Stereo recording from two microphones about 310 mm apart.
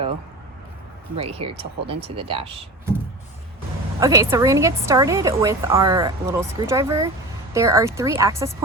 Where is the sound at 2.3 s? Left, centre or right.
Centre.